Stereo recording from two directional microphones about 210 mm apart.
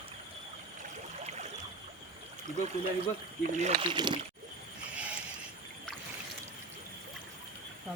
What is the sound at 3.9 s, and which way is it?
Speech, 20° right (ahead or behind).